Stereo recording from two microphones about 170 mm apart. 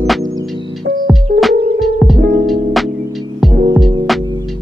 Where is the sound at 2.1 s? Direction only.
65° right (ahead or behind).